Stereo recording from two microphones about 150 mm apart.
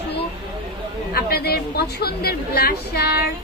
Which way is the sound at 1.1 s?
90° left.